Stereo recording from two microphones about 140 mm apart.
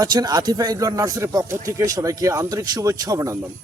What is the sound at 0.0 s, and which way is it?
Speech, 30° right (ahead or behind).